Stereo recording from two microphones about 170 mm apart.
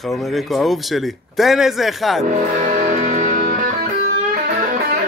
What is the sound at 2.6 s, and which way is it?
Music, 45° right (ahead or behind).